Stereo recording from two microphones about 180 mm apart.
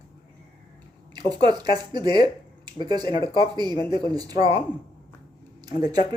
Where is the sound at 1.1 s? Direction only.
25° right (ahead or behind).